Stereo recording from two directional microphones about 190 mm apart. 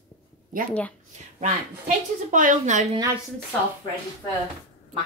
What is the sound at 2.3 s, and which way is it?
Speech, 45° right (ahead or behind).